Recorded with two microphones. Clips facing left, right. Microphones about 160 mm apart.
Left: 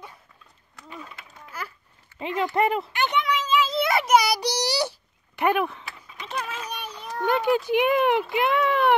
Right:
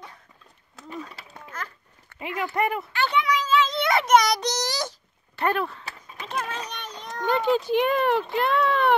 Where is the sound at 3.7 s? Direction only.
5° left (ahead or behind).